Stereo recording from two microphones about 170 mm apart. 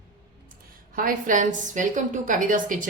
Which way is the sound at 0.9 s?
50° right (ahead or behind).